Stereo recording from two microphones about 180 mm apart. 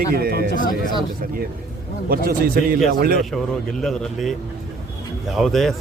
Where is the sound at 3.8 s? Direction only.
Centre (ahead or behind).